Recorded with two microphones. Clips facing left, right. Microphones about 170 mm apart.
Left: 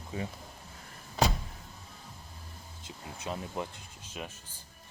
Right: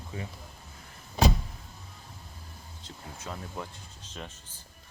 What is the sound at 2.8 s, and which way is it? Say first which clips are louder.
Speech: left 3 dB; 15° left (ahead or behind).